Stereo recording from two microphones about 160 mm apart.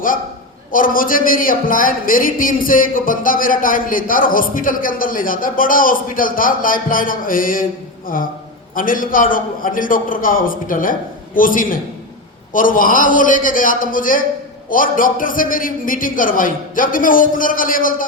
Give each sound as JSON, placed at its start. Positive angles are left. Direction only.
{"t": 0.7, "sound": "speech", "side_deg": 60}